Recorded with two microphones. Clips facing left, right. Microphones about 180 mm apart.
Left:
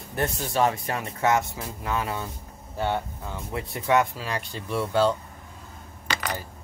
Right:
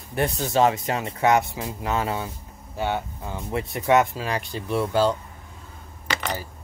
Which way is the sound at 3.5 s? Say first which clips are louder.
Right 4 dB; 20° right (ahead or behind).